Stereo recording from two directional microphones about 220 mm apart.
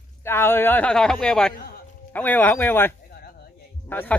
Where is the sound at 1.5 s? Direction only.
45° left (ahead or behind).